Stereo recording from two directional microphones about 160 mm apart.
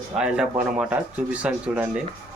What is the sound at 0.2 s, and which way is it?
Speech, 5° right (ahead or behind).